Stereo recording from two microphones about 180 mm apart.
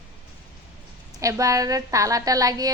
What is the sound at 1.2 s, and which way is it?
A woman's voice, 20° right (ahead or behind).